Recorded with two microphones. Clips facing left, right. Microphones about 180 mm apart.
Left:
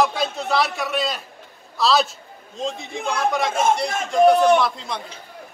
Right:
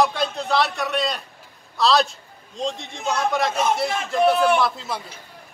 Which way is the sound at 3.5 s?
50° left (ahead or behind).